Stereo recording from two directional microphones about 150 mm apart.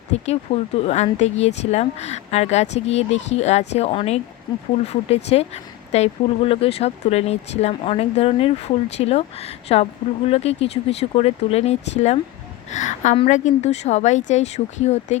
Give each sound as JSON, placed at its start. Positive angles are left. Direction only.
{"t": 0.1, "sound": "speech", "side_deg": 45}